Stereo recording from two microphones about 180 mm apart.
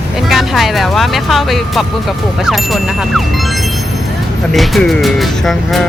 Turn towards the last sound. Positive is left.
turn(degrees=0)  # may be behind; listen again after turning